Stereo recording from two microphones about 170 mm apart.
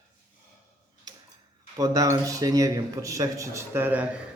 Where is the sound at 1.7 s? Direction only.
20° right (ahead or behind).